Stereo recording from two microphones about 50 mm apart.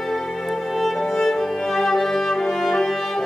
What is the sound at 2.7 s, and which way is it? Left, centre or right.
Brass instrument, centre.